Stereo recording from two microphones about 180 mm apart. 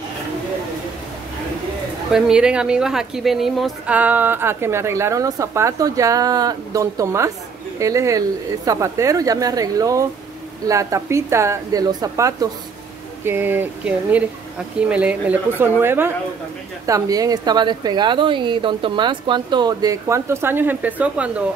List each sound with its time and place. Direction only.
2.1 s speech: 5° right (ahead or behind)